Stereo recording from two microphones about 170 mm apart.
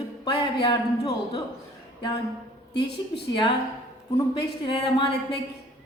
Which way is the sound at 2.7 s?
80° left.